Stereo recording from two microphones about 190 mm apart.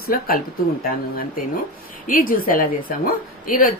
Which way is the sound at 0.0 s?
50° left (ahead or behind).